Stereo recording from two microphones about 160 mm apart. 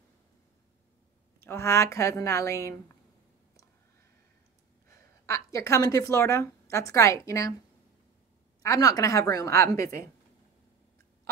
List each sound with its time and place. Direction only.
1.4 s a woman's voice: 15° left (ahead or behind)
5.2 s a woman's voice: 20° left (ahead or behind)
8.6 s a woman's voice: 20° left (ahead or behind)